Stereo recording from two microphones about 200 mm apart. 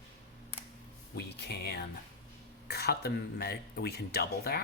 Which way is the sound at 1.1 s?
50° left (ahead or behind).